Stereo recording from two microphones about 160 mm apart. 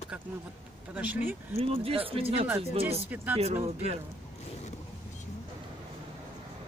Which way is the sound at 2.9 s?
10° right (ahead or behind).